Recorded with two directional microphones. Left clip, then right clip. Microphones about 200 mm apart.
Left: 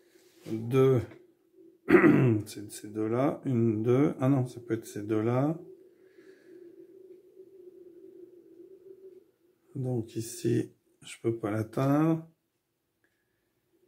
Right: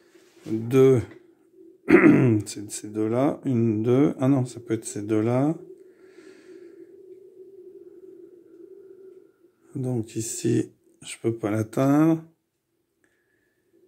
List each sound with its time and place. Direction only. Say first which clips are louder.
0.7 s speech: right 7 dB; 35° right (ahead or behind)
1.9 s speech: right 5 dB; 25° right (ahead or behind)
6.1 s snort: right 7 dB; 35° right (ahead or behind)
9.8 s speech: right 5 dB; 30° right (ahead or behind)